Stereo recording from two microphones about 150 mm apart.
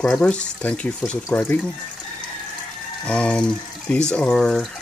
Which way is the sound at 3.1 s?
5° left (ahead or behind).